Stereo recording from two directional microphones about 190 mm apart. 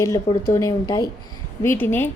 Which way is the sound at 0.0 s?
15° left (ahead or behind).